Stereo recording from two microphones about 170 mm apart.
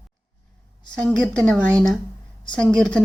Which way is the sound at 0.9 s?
5° left (ahead or behind).